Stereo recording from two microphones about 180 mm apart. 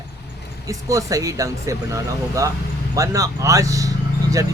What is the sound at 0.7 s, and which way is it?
Speech, 15° right (ahead or behind).